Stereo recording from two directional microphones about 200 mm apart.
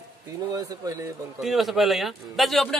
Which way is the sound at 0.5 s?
15° right (ahead or behind).